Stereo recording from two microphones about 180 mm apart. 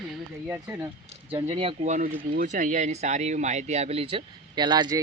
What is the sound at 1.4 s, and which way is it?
Speech, 35° right (ahead or behind).